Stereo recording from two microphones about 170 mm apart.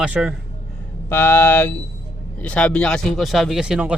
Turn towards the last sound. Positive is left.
turn(degrees=-5)  # may be behind; listen again after turning